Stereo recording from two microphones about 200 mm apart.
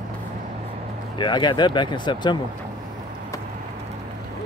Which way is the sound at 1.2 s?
20° left (ahead or behind).